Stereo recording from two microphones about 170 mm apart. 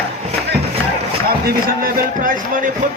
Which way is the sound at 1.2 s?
60° right (ahead or behind).